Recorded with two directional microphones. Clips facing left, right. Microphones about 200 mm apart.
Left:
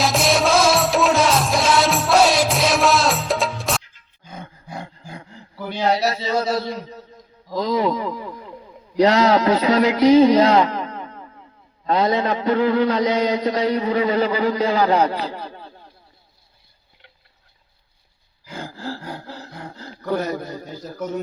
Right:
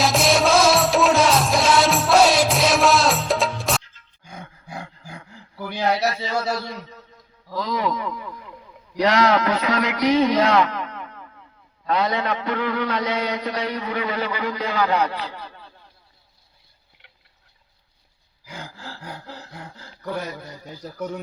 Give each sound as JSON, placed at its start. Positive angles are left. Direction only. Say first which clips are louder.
{"t": 0.0, "sound": "music", "louder": "even", "side_deg": 0}
{"t": 5.6, "sound": "a man's voice", "louder": "left 2 dB", "side_deg": 25}
{"t": 18.6, "sound": "gasp", "louder": "left 10 dB", "side_deg": 35}
{"t": 19.9, "sound": "a man's voice", "louder": "left 7 dB", "side_deg": 45}